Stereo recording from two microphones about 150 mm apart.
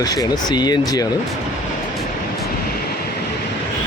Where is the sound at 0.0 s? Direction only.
25° left (ahead or behind).